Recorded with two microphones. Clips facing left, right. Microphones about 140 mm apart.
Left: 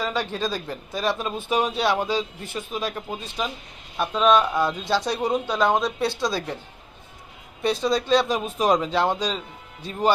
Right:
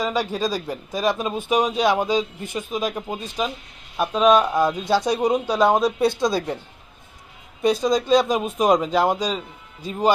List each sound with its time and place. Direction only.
0.0 s speech: 10° right (ahead or behind)
7.6 s speech: 10° right (ahead or behind)